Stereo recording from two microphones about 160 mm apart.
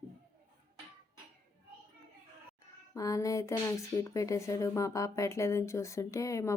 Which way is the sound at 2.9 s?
20° left (ahead or behind).